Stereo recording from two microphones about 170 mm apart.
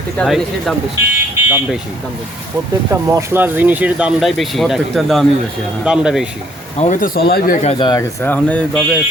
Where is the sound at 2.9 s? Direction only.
15° right (ahead or behind).